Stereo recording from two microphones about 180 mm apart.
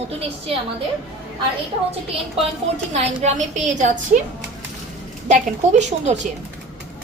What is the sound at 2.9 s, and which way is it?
A woman's voice, 40° right (ahead or behind).